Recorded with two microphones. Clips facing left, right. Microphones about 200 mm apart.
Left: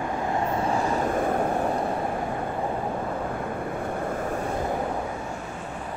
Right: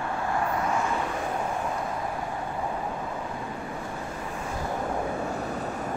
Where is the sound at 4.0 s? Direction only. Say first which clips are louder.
Left 7 dB; 55° left (ahead or behind).